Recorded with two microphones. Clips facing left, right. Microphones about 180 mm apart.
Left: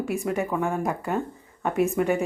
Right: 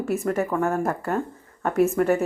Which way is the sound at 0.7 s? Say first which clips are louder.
Right 2 dB; 15° left (ahead or behind).